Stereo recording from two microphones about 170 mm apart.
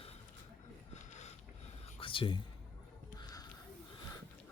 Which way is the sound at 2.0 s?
30° left (ahead or behind).